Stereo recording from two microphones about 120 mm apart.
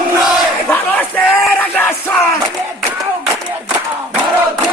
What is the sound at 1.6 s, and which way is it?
Yell, 20° left (ahead or behind).